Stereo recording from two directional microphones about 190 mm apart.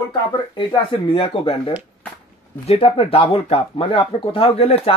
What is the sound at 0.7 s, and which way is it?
Speech, 25° left (ahead or behind).